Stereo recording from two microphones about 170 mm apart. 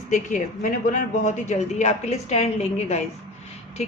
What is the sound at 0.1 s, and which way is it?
A woman's voice, 50° left (ahead or behind).